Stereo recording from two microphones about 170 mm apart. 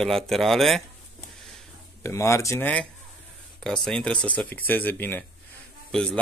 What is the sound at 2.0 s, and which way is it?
A man's voice, 15° left (ahead or behind).